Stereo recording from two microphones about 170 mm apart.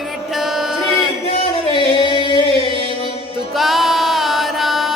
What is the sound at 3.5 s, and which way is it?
Music, centre (ahead or behind).